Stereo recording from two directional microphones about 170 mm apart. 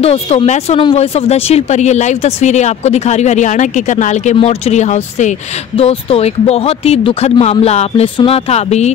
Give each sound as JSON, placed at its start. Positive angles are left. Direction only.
{"t": 0.0, "sound": "speech", "side_deg": 35}